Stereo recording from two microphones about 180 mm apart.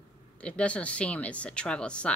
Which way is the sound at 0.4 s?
5° left (ahead or behind).